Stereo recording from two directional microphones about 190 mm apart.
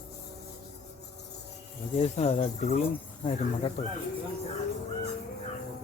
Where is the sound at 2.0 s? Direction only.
35° left (ahead or behind).